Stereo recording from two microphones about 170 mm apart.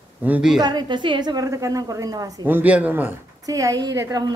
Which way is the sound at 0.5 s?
25° right (ahead or behind).